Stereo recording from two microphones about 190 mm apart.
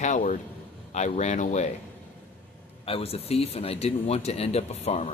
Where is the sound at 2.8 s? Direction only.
30° left (ahead or behind).